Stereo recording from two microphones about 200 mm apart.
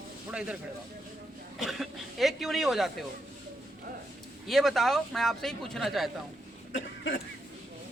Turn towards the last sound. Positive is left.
turn(degrees=70)  # may be behind; listen again after turning